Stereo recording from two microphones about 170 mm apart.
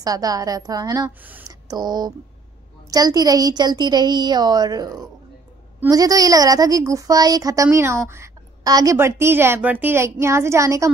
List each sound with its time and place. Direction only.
0.0 s a woman's voice: 20° right (ahead or behind)